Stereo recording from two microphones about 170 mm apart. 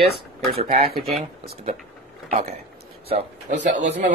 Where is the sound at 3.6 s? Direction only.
50° right (ahead or behind).